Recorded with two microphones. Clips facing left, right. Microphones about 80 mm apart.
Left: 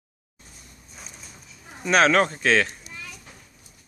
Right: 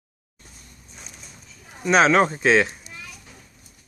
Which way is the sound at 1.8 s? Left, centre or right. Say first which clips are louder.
Right 2 dB; centre.